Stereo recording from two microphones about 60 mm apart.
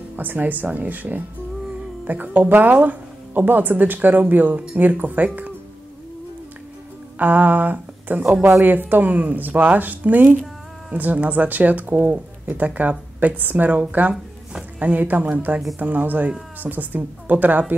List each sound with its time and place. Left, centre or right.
0.1 s speech: right
7.2 s speech: right